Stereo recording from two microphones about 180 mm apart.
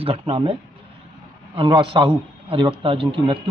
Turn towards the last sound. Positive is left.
turn(degrees=-30)  # may be behind; listen again after turning